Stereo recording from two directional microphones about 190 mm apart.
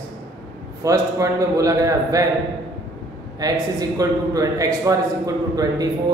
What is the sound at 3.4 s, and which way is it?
A man's voice, 20° right (ahead or behind).